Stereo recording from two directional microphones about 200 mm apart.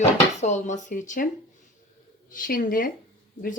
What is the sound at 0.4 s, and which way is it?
Speech, 35° left (ahead or behind).